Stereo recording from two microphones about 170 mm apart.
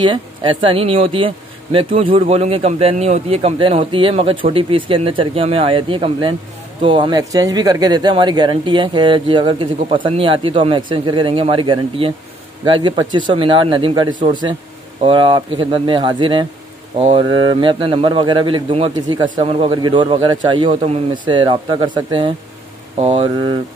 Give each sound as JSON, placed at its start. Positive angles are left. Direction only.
{"t": 0.0, "sound": "speech", "side_deg": -30}